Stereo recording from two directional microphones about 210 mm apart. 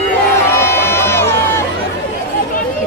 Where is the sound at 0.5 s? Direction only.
10° left (ahead or behind).